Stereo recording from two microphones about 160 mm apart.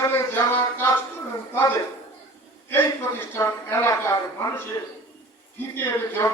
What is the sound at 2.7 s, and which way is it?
A man's voice, 15° left (ahead or behind).